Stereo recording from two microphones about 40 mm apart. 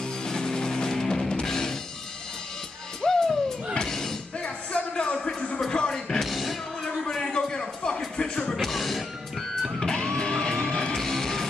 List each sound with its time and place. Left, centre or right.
0.2 s music: centre
3.0 s music: centre
4.4 s music: left
5.7 s music: centre
6.2 s music: centre
7.1 s a sound: centre
8.5 s music: centre
9.8 s music: centre
11.0 s music: centre